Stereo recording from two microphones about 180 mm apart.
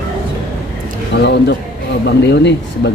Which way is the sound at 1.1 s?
75° left (ahead or behind).